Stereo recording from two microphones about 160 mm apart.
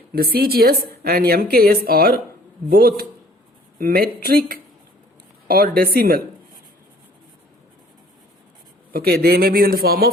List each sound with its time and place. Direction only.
0.1 s a woman's voice: 70° right (ahead or behind)
8.9 s a woman's voice: 75° right (ahead or behind)